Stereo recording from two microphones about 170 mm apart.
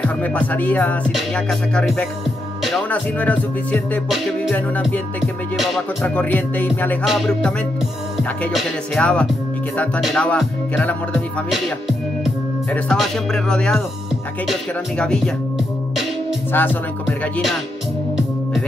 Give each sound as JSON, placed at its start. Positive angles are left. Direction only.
{"t": 0.0, "sound": "music", "side_deg": 10}
{"t": 7.1, "sound": "speech", "side_deg": 0}
{"t": 10.8, "sound": "music", "side_deg": 10}
{"t": 12.7, "sound": "speech", "side_deg": 5}
{"t": 16.5, "sound": "music", "side_deg": 10}
{"t": 17.2, "sound": "speech", "side_deg": 0}